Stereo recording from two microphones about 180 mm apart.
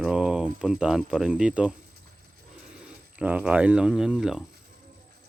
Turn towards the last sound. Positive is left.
turn(degrees=-5)  # may be behind; listen again after turning